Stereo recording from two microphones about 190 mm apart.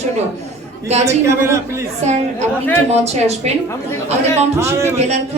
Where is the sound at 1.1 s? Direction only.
15° right (ahead or behind).